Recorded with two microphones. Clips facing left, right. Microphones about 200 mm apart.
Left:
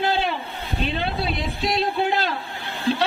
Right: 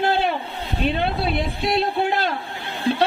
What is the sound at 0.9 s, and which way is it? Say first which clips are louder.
Speech: right 5 dB; 55° right (ahead or behind).